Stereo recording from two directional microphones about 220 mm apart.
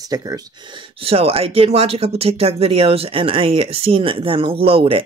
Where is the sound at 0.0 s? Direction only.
15° right (ahead or behind).